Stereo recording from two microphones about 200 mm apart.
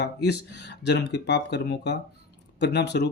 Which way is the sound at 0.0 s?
60° left (ahead or behind).